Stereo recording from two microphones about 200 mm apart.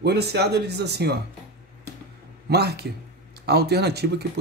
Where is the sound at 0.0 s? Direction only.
55° right (ahead or behind).